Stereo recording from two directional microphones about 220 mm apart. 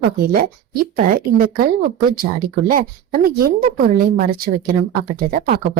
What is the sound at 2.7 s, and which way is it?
A woman's voice, 40° right (ahead or behind).